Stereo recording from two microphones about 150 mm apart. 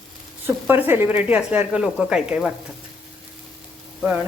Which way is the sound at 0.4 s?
15° right (ahead or behind).